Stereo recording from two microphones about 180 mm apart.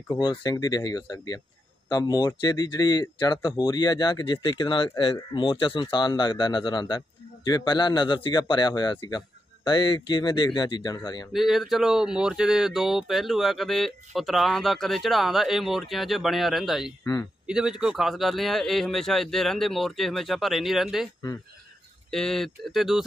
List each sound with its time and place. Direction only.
0.1 s speech: 25° left (ahead or behind)
11.3 s speech: centre (ahead or behind)
17.0 s speech: 15° left (ahead or behind)
17.5 s speech: 5° right (ahead or behind)
22.1 s speech: centre (ahead or behind)